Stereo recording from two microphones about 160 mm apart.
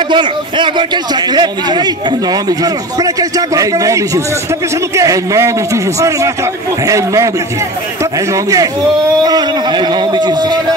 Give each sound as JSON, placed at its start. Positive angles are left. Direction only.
{"t": 0.1, "sound": "a man's voice", "side_deg": -30}